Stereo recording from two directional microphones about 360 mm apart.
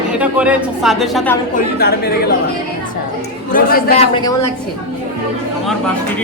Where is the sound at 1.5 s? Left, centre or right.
Left.